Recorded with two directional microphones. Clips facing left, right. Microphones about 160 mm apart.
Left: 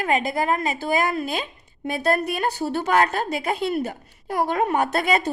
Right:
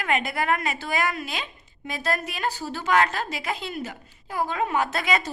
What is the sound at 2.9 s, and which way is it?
A woman's voice, 45° left (ahead or behind).